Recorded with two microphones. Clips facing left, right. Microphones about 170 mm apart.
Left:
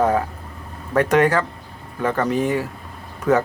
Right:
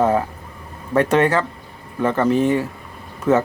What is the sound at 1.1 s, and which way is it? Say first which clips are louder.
Speech: left 1 dB; 30° right (ahead or behind).